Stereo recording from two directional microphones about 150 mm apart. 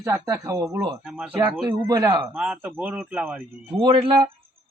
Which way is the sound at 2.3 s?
5° right (ahead or behind).